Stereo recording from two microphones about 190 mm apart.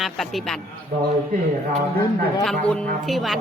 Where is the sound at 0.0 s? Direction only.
Centre (ahead or behind).